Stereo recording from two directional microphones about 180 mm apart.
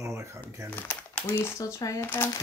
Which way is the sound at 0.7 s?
10° left (ahead or behind).